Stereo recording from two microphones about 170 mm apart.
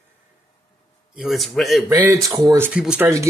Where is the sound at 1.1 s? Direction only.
Centre (ahead or behind).